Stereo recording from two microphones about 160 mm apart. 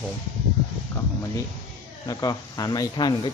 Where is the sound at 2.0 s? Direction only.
25° left (ahead or behind).